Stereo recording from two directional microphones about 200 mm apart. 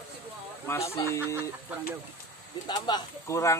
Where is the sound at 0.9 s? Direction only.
15° left (ahead or behind).